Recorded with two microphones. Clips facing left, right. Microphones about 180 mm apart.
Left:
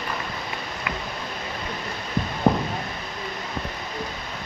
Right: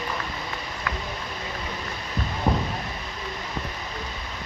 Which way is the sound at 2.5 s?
50° left (ahead or behind).